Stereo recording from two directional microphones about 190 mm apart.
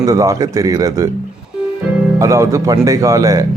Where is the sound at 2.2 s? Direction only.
15° right (ahead or behind).